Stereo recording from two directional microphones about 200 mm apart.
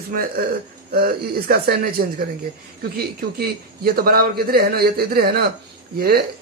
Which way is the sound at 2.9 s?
50° right (ahead or behind).